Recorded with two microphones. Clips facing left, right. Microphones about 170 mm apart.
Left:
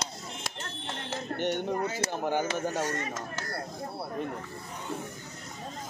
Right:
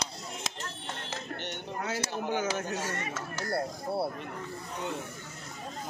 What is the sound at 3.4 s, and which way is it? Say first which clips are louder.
Speech: right 5 dB; 25° right (ahead or behind).